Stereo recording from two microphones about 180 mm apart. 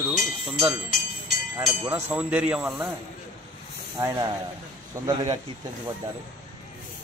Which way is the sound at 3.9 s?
20° right (ahead or behind).